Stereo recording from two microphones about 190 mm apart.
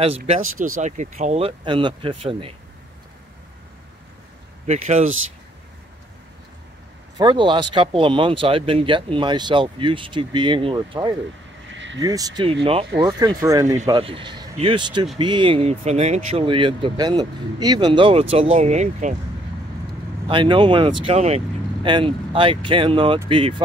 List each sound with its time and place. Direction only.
0.7 s speech: 40° right (ahead or behind)
4.6 s speech: 40° right (ahead or behind)
7.2 s speech: 25° right (ahead or behind)
11.7 s a sound: 75° right (ahead or behind)
12.0 s speech: 20° right (ahead or behind)
18.6 s speech: 35° right (ahead or behind)
20.2 s speech: 25° right (ahead or behind)